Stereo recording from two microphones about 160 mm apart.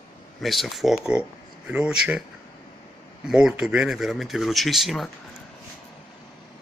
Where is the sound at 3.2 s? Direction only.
5° right (ahead or behind).